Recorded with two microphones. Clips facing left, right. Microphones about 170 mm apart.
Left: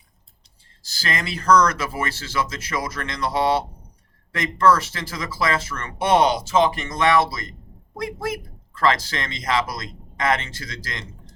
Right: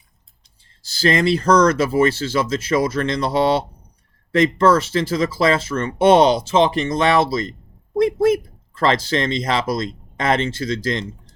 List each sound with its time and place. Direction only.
0.9 s speech: 30° right (ahead or behind)